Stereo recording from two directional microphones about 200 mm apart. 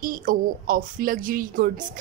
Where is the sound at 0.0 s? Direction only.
45° right (ahead or behind).